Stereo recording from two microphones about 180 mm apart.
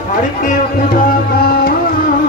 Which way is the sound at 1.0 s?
55° left (ahead or behind).